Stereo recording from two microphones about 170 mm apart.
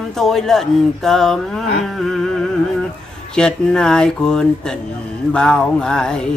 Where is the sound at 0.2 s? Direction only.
Centre (ahead or behind).